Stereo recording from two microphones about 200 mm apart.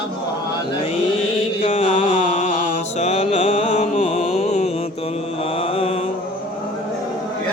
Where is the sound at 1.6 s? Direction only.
30° left (ahead or behind).